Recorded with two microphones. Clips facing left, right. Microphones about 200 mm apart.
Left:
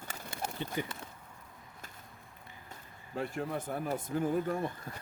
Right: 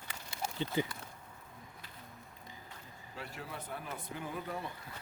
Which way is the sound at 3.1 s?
50° left (ahead or behind).